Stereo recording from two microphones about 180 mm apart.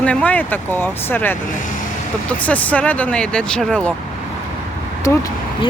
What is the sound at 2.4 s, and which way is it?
Speech, 10° left (ahead or behind).